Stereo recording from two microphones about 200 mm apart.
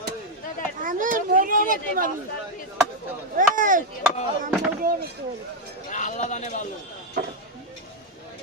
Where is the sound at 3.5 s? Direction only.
40° right (ahead or behind).